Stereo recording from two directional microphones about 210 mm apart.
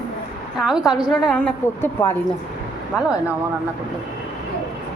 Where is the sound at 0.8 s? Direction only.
20° left (ahead or behind).